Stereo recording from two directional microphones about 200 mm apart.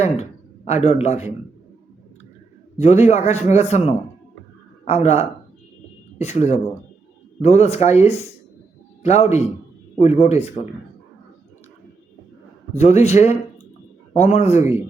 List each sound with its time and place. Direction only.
0.0 s speech: 35° left (ahead or behind)
2.7 s a man's voice: 35° left (ahead or behind)
12.7 s a man's voice: 35° left (ahead or behind)
14.6 s speech: 10° right (ahead or behind)